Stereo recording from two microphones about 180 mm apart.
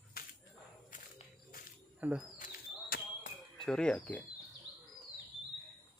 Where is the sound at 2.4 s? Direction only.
55° left (ahead or behind).